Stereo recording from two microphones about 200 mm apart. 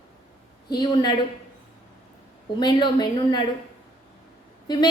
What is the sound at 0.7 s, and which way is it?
Speech, 20° left (ahead or behind).